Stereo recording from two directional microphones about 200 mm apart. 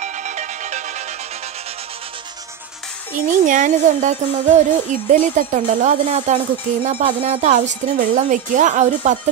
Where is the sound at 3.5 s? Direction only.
40° right (ahead or behind).